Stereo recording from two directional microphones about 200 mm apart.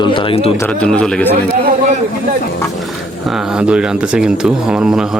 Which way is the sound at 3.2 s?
5° right (ahead or behind).